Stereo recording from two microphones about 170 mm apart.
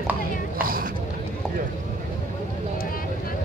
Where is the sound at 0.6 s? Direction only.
60° right (ahead or behind).